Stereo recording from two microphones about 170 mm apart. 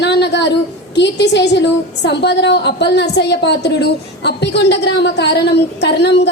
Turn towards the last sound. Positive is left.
turn(degrees=80)